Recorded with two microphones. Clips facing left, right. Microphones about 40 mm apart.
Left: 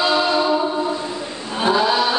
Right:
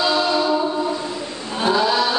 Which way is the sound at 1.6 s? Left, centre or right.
Centre.